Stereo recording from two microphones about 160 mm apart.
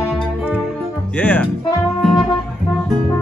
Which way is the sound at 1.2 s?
10° left (ahead or behind).